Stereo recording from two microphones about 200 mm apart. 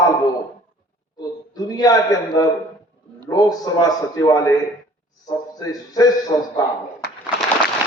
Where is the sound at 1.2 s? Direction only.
20° left (ahead or behind).